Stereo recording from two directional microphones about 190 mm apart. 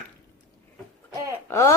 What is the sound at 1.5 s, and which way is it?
Speech, 15° left (ahead or behind).